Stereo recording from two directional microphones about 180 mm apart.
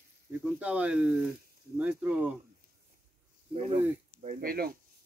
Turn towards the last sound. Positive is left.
turn(degrees=-55)  # may be behind; listen again after turning